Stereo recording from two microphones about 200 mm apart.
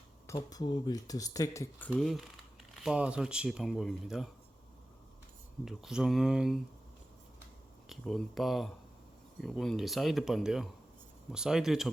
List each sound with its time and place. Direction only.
0.3 s speech: 20° left (ahead or behind)
1.9 s speech: centre (ahead or behind)
5.6 s speech: centre (ahead or behind)
7.9 s speech: centre (ahead or behind)